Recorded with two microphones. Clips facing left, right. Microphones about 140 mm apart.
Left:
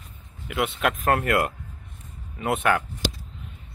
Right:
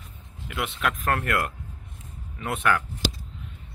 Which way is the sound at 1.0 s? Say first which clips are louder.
Left 5 dB; 15° left (ahead or behind).